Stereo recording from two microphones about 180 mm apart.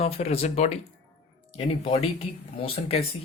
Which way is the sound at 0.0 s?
35° left (ahead or behind).